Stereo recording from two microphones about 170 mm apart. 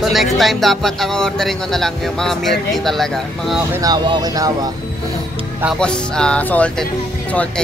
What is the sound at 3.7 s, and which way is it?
Speech, 20° right (ahead or behind).